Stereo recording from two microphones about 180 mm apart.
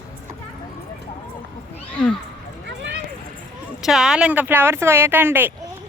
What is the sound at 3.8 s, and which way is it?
Speech, centre (ahead or behind).